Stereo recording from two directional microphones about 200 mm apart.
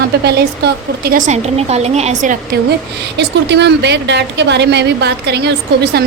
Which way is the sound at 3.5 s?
60° right (ahead or behind).